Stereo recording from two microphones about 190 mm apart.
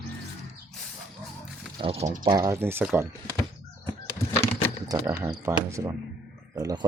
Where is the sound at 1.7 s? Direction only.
30° right (ahead or behind).